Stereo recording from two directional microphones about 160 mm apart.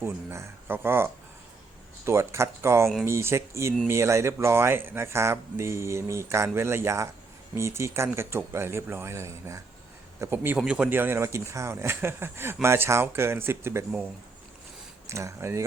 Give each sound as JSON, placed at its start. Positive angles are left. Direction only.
{"t": 0.0, "sound": "speech", "side_deg": -15}